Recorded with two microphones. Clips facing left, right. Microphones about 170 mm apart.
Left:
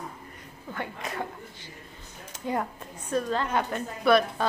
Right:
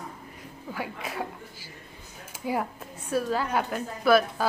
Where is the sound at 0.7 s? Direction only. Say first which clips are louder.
Even; 5° right (ahead or behind).